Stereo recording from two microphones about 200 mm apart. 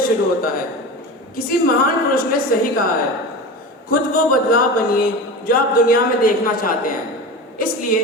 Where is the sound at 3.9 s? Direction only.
45° left (ahead or behind).